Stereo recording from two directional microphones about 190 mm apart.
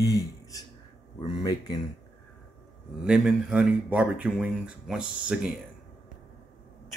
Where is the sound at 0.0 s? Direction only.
20° left (ahead or behind).